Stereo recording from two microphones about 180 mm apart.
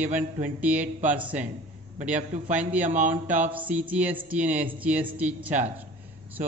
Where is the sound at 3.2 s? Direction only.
10° right (ahead or behind).